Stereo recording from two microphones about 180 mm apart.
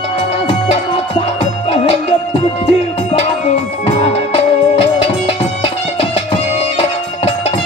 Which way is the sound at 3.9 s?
30° left (ahead or behind).